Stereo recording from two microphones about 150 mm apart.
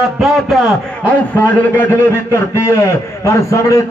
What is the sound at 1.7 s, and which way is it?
A man's voice, 15° left (ahead or behind).